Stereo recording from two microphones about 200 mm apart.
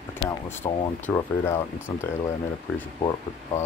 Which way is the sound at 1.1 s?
15° left (ahead or behind).